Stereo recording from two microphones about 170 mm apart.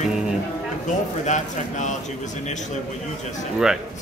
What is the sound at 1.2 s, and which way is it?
Speech, 45° left (ahead or behind).